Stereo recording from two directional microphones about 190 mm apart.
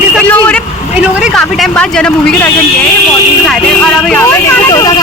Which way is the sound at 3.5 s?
5° left (ahead or behind).